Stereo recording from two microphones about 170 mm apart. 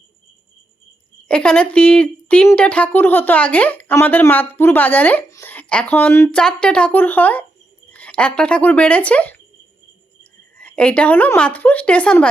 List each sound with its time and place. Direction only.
1.3 s a woman's voice: 5° left (ahead or behind)
10.6 s a woman's voice: 5° left (ahead or behind)